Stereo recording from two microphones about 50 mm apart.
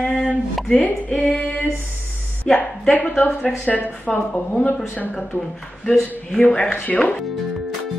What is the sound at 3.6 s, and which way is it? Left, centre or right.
A woman's voice, left.